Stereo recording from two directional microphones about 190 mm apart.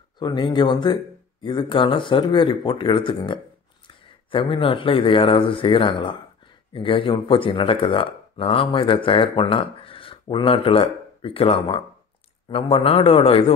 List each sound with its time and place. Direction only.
0.2 s speech: 25° left (ahead or behind)